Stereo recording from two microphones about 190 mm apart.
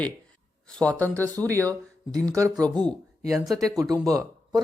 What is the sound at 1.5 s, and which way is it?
Speech, 15° right (ahead or behind).